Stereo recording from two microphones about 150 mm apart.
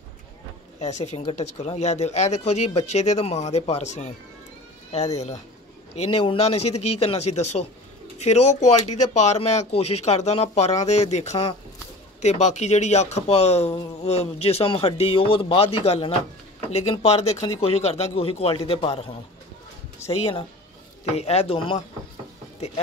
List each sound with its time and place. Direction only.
0.7 s speech: 50° left (ahead or behind)
17.6 s a man's voice: 45° left (ahead or behind)
20.1 s a man's voice: 40° left (ahead or behind)